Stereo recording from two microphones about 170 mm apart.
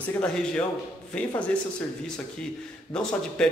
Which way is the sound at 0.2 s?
5° left (ahead or behind).